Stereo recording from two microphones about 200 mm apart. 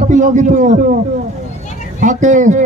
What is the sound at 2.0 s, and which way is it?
Speech, 40° right (ahead or behind).